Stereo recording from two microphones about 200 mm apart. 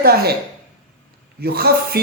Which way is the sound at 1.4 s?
50° right (ahead or behind).